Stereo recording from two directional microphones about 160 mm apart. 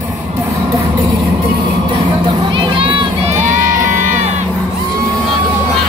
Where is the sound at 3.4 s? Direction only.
55° right (ahead or behind).